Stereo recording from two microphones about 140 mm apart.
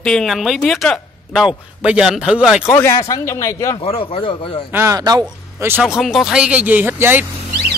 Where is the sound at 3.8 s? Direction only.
40° left (ahead or behind).